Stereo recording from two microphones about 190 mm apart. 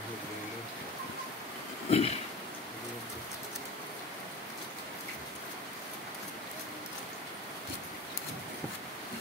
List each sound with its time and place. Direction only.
1.9 s vehicle: 35° left (ahead or behind)